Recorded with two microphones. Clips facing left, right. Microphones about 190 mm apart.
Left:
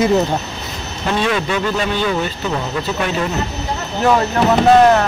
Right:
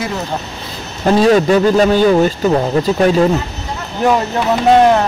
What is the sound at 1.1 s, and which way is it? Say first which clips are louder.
A man's voice: right 9 dB; 40° right (ahead or behind).